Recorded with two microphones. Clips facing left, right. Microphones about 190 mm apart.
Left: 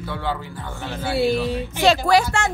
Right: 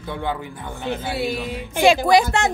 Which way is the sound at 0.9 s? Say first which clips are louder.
Left 4 dB; 20° right (ahead or behind).